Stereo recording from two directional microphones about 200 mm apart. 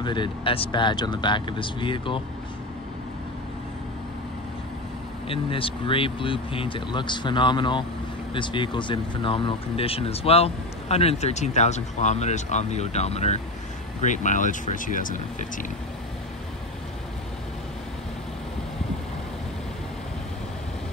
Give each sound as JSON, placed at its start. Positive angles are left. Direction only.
{"t": 0.0, "sound": "speech", "side_deg": 25}
{"t": 5.3, "sound": "speech", "side_deg": 25}